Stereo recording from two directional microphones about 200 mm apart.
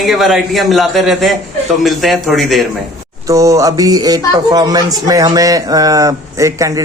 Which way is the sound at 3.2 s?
15° right (ahead or behind).